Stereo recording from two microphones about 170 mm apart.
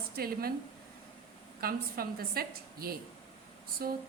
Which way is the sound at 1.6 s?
60° right (ahead or behind).